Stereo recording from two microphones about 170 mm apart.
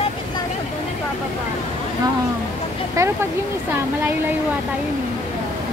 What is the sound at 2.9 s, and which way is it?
Speech, 15° right (ahead or behind).